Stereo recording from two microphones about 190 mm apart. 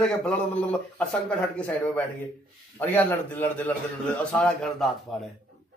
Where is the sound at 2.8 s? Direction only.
10° left (ahead or behind).